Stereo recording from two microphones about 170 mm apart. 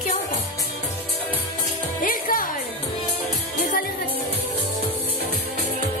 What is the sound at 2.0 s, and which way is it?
Music, 55° left (ahead or behind).